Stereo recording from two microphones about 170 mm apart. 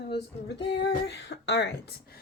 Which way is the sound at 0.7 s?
90° left.